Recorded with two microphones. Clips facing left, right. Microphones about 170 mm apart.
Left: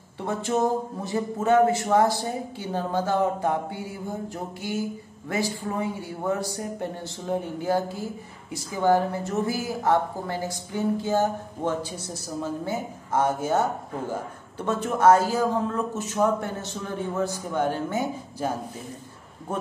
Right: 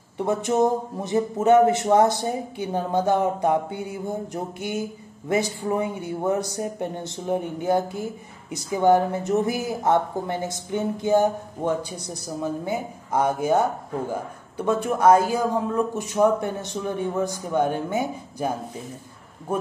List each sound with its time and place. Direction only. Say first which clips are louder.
0.2 s speech: right 4 dB; 20° right (ahead or behind)
14.6 s a man's voice: right 2 dB; 10° right (ahead or behind)
19.5 s a man's voice: right 4 dB; 10° right (ahead or behind)